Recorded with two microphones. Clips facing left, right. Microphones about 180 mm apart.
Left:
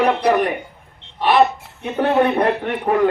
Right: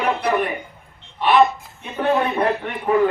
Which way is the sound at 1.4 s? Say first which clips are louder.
Left 1 dB; 70° left (ahead or behind).